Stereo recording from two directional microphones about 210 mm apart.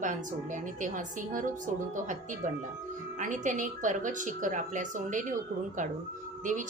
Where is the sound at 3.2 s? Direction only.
35° right (ahead or behind).